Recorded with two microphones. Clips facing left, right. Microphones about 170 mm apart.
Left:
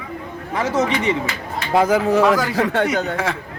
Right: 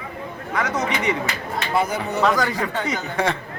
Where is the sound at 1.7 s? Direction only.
90° left; by 3.0 s 65° left (ahead or behind).